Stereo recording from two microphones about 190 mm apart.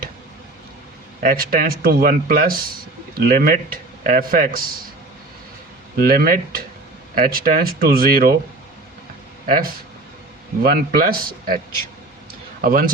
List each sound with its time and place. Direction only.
1.2 s a man's voice: 50° right (ahead or behind)
6.0 s a man's voice: 50° right (ahead or behind)
10.6 s a man's voice: 50° right (ahead or behind)
12.6 s a man's voice: 50° right (ahead or behind)